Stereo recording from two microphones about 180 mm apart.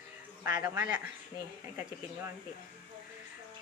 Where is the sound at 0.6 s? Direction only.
25° right (ahead or behind).